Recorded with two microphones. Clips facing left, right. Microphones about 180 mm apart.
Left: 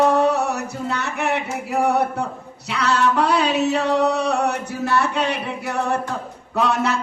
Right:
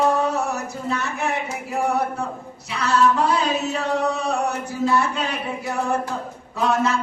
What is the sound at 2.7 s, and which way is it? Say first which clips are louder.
Chant: even; 70° left (ahead or behind).